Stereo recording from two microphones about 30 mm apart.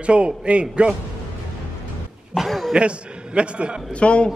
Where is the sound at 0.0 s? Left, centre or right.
Right.